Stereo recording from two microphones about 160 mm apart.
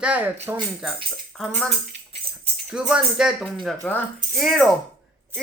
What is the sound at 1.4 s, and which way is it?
Speech, centre (ahead or behind).